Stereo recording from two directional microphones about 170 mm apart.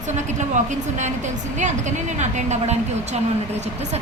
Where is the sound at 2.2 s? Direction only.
40° right (ahead or behind).